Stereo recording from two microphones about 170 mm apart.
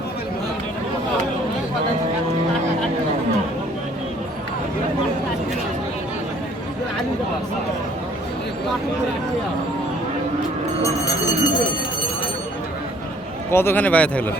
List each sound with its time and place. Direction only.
11.0 s speech: 20° left (ahead or behind)
13.5 s speech: 15° left (ahead or behind)